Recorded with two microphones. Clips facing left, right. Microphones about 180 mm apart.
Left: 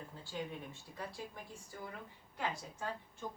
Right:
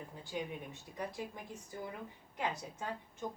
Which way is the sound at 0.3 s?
15° right (ahead or behind).